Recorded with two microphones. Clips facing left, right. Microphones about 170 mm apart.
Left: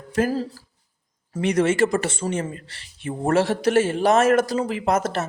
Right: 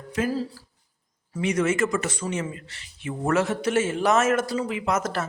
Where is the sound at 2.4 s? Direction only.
40° left (ahead or behind).